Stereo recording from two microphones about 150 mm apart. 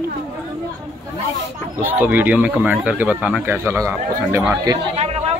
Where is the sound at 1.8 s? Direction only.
10° right (ahead or behind).